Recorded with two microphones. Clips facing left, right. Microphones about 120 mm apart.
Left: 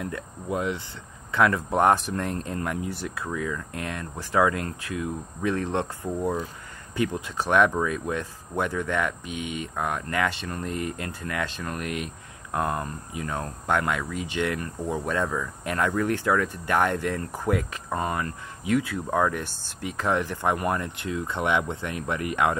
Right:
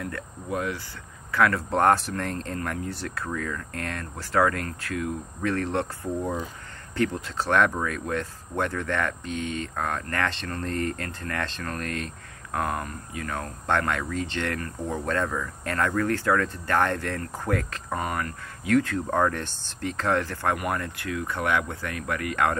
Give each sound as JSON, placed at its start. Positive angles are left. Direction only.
{"t": 0.0, "sound": "speech", "side_deg": 20}